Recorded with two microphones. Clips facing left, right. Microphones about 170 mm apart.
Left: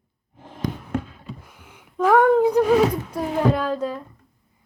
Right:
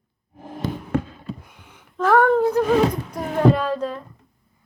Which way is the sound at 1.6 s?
10° left (ahead or behind).